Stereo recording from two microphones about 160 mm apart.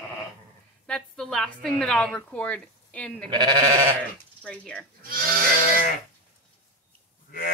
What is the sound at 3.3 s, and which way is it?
Sheep, 25° right (ahead or behind).